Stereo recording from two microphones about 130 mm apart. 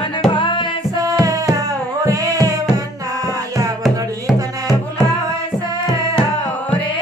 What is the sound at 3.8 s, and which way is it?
Music, centre (ahead or behind).